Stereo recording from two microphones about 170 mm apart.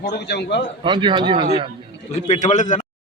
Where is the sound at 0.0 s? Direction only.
80° left.